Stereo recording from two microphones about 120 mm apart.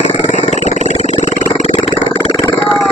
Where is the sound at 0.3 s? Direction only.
70° left (ahead or behind).